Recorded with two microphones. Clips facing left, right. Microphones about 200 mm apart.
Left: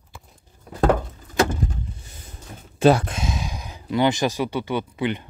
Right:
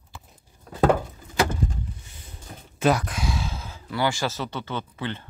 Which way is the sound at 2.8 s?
30° left (ahead or behind).